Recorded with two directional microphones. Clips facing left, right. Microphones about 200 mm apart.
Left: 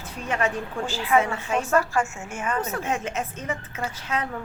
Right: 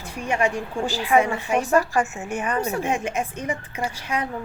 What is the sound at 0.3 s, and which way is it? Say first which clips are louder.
A woman's voice: right 3 dB; 15° right (ahead or behind).